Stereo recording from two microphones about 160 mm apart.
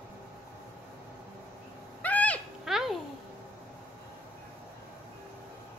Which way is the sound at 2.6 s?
Centre (ahead or behind).